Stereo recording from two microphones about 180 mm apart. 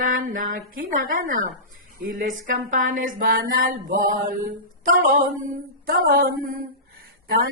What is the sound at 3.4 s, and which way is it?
Mantra, 60° right (ahead or behind).